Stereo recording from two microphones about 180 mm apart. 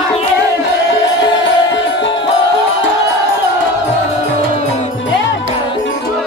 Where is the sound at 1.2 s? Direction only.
80° left.